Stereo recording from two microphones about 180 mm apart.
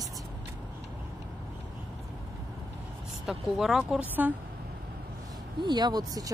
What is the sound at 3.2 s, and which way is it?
Speech, centre (ahead or behind).